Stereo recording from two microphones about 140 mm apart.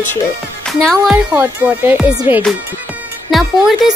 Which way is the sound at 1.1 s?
10° right (ahead or behind).